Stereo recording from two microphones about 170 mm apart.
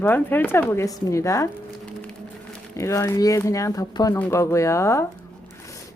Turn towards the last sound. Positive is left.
turn(degrees=15)  # may be behind; listen again after turning